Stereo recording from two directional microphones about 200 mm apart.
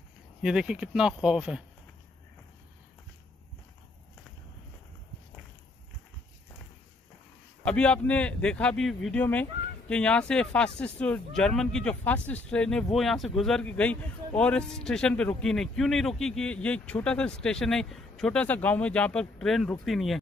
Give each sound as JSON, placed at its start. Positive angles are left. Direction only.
{"t": 0.4, "sound": "speech", "side_deg": -5}
{"t": 7.6, "sound": "speech", "side_deg": 5}